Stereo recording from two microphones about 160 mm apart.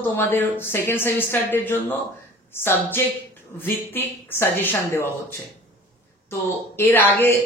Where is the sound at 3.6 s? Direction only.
15° left (ahead or behind).